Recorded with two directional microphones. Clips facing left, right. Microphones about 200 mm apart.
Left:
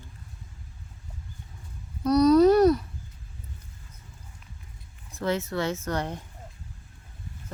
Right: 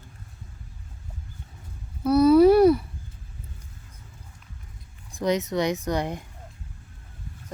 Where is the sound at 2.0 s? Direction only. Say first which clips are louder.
Right 2 dB; 5° right (ahead or behind).